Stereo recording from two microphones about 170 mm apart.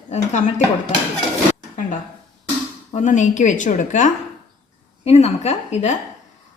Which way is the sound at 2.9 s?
45° left (ahead or behind).